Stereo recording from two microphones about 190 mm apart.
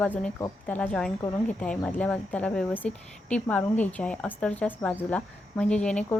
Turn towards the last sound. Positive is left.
turn(degrees=5)  # may be behind; listen again after turning